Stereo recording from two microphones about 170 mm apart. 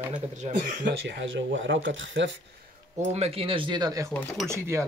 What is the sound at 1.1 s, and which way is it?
Speech, 90° right.